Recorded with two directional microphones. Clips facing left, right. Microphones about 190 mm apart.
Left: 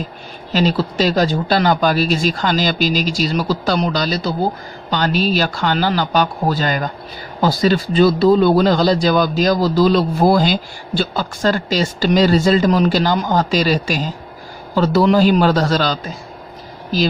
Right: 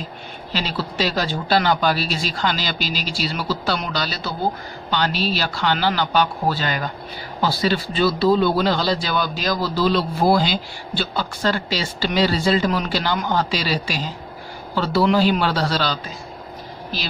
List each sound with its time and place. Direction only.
0.5 s speech: 45° left (ahead or behind)